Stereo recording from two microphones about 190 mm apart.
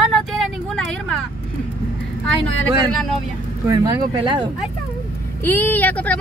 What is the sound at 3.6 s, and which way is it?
Speech, 20° right (ahead or behind).